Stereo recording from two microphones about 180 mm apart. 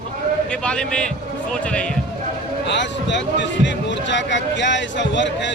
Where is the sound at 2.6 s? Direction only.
80° left.